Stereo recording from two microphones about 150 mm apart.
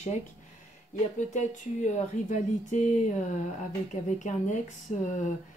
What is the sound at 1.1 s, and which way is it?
Speech, 55° left (ahead or behind).